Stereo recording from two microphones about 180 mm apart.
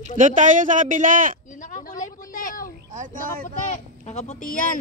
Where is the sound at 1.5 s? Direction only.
45° left (ahead or behind).